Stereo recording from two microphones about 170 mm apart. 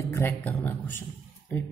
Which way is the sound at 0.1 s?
15° left (ahead or behind).